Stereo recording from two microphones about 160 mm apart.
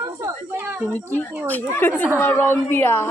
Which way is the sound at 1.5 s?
10° left (ahead or behind).